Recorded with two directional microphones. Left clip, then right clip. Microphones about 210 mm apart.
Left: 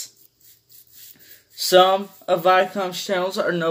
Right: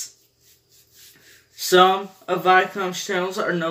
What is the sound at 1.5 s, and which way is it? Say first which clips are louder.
Speech: left 1 dB; 45° left (ahead or behind).